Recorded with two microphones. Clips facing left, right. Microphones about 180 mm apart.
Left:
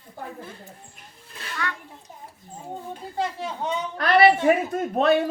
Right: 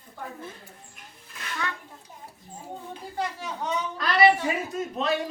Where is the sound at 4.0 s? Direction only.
60° left (ahead or behind).